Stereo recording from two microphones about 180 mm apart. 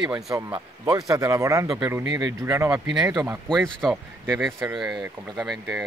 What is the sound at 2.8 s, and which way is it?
Speech, 5° right (ahead or behind).